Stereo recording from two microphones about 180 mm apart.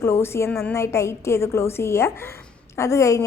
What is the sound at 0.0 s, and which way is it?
A woman's voice, 15° left (ahead or behind).